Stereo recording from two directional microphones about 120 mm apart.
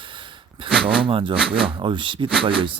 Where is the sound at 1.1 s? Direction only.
50° right (ahead or behind).